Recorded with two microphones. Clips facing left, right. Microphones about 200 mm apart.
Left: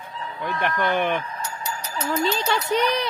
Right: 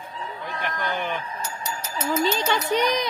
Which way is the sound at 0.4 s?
60° left (ahead or behind).